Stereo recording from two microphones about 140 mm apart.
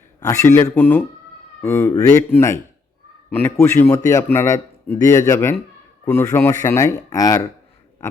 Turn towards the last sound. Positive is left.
turn(degrees=25)  # may be behind; listen again after turning